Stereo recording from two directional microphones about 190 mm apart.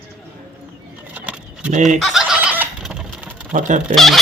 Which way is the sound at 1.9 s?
Centre (ahead or behind).